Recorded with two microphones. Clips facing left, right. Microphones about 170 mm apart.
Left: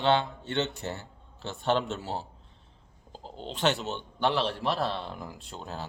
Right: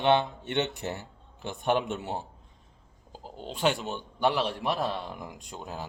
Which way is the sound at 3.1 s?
10° right (ahead or behind).